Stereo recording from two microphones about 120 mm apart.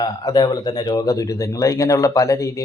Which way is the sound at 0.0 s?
35° left (ahead or behind).